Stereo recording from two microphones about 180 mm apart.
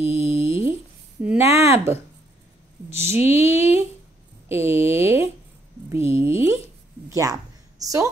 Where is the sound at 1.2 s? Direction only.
15° right (ahead or behind).